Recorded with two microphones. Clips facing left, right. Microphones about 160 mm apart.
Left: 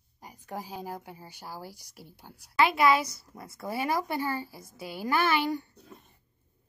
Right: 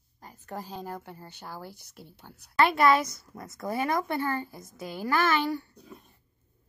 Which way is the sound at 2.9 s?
50° right (ahead or behind).